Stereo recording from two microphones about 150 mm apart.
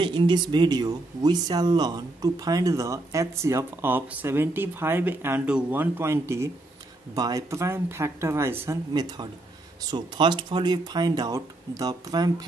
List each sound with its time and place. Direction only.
0.0 s speech: 30° right (ahead or behind)